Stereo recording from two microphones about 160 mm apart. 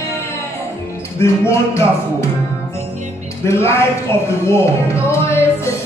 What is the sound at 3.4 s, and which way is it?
Speech, 15° left (ahead or behind).